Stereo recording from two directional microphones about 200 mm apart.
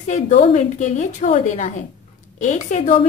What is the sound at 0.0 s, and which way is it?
A woman's voice, 35° left (ahead or behind).